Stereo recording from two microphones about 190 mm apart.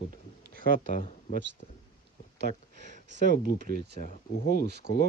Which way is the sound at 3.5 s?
45° left (ahead or behind).